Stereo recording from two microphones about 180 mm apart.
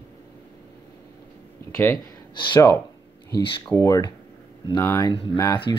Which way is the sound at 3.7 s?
20° left (ahead or behind).